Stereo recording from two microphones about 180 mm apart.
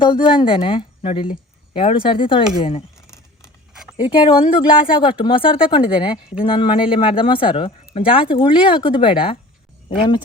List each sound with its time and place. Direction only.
0.0 s speech: 25° left (ahead or behind)
3.7 s a sound: centre (ahead or behind)
4.0 s speech: 30° left (ahead or behind)